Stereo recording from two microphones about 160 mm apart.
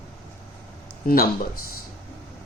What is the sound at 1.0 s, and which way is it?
Speech, 65° left (ahead or behind).